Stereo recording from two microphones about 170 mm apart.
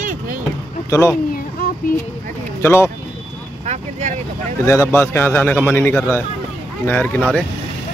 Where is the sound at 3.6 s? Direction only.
40° right (ahead or behind).